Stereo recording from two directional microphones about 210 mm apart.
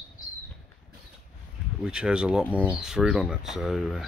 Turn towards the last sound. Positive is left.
turn(degrees=0)  # may be behind; listen again after turning